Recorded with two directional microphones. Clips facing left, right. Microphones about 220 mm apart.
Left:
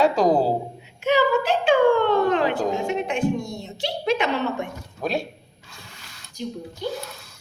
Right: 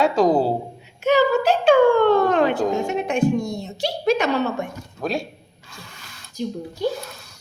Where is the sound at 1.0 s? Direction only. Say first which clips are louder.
Right 3 dB; 40° right (ahead or behind).